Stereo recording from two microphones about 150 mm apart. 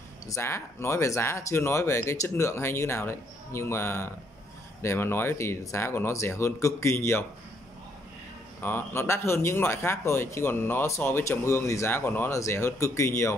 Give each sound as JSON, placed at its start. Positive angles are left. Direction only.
{"t": 0.3, "sound": "speech", "side_deg": 20}
{"t": 8.6, "sound": "speech", "side_deg": 15}